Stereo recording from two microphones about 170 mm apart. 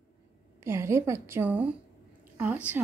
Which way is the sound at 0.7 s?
15° right (ahead or behind).